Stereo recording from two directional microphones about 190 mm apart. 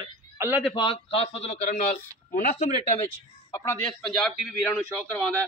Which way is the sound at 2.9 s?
20° left (ahead or behind).